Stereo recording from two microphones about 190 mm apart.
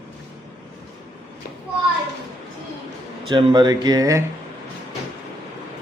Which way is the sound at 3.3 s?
25° right (ahead or behind).